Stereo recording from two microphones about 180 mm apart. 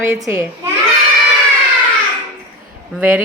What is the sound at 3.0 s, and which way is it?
Speech, 10° right (ahead or behind).